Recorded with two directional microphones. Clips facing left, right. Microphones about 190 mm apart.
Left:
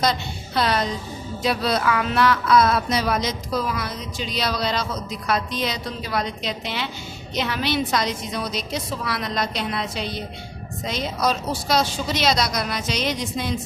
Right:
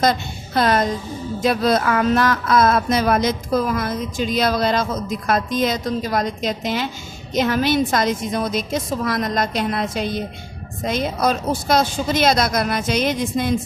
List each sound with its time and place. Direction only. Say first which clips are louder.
0.0 s speech: right 4 dB; 50° right (ahead or behind)